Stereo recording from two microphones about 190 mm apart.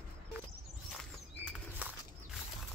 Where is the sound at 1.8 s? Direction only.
10° right (ahead or behind).